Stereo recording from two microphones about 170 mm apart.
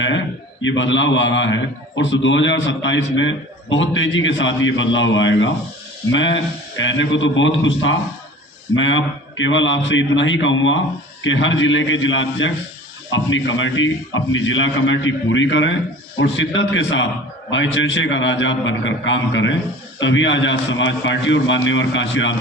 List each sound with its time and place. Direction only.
0.6 s a man's voice: 90° left
8.8 s a man's voice: 90° left
14.4 s a man's voice: 90° left